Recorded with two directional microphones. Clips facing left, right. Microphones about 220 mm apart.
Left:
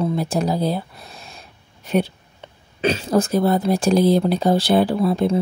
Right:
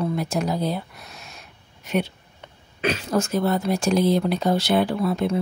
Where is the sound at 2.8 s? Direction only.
30° left (ahead or behind).